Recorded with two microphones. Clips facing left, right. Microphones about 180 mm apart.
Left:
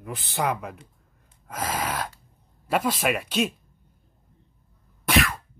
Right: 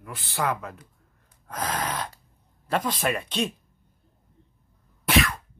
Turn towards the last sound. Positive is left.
turn(degrees=0)  # may be behind; listen again after turning